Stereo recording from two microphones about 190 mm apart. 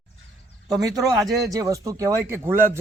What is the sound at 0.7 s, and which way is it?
A man's voice, 20° right (ahead or behind).